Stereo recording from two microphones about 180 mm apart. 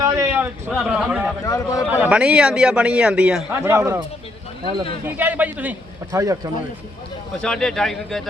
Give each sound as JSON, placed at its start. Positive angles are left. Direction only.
{"t": 0.0, "sound": "a sound", "side_deg": -15}
{"t": 0.7, "sound": "speech", "side_deg": 0}
{"t": 1.5, "sound": "a man's voice", "side_deg": 20}
{"t": 1.8, "sound": "a man's voice", "side_deg": -10}
{"t": 5.0, "sound": "a man's voice", "side_deg": -10}
{"t": 7.4, "sound": "speech", "side_deg": 5}